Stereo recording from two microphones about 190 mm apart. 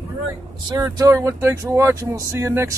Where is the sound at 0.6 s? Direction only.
20° right (ahead or behind).